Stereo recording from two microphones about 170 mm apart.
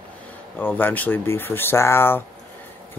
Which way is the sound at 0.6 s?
10° left (ahead or behind).